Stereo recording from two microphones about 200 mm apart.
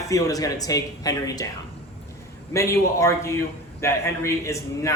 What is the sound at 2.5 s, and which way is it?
A man's voice, 15° left (ahead or behind).